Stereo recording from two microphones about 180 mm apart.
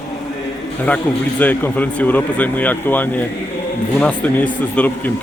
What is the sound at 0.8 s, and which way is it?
Speech, 10° left (ahead or behind).